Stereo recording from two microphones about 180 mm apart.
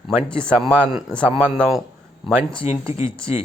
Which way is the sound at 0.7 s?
10° right (ahead or behind).